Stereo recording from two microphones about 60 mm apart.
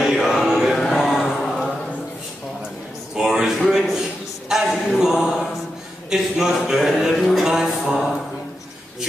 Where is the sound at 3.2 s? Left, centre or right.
Centre.